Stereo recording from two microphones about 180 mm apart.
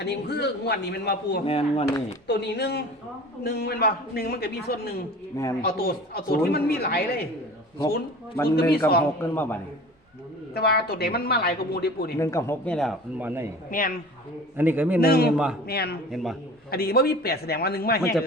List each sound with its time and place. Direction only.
0.0 s a man's voice: 65° left (ahead or behind)
1.5 s speech: 35° left (ahead or behind)
2.2 s a man's voice: 70° left (ahead or behind)
8.4 s a man's voice: 60° left (ahead or behind)
9.2 s speech: 10° left (ahead or behind)
10.5 s a man's voice: 60° left (ahead or behind)
12.2 s speech: 15° left (ahead or behind)
12.7 s speech: centre (ahead or behind)
13.1 s a man's voice: 10° right (ahead or behind)
13.7 s speech: 50° left (ahead or behind)
14.5 s a man's voice: 10° right (ahead or behind)
15.0 s a man's voice: 60° left (ahead or behind)
16.1 s speech: centre (ahead or behind)
16.7 s a man's voice: 60° left (ahead or behind)